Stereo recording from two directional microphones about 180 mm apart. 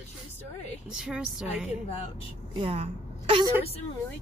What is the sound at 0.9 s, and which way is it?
Speech, 5° right (ahead or behind).